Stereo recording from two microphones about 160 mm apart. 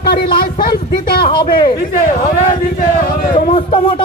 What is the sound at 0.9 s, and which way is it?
Speech, 70° left (ahead or behind).